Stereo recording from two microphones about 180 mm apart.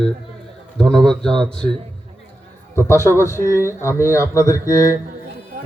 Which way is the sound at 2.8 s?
15° left (ahead or behind).